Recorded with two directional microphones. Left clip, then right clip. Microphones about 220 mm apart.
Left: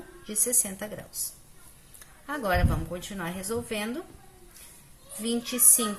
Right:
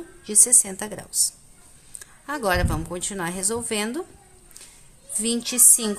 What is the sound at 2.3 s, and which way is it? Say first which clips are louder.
A woman's voice: right 4 dB; 45° right (ahead or behind).